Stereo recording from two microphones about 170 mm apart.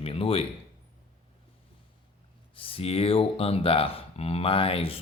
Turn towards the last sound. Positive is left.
turn(degrees=35)  # may be behind; listen again after turning